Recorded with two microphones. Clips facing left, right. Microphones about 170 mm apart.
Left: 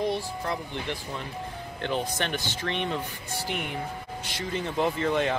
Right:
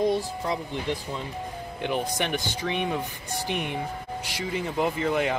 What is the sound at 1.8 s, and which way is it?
Speech, 10° right (ahead or behind).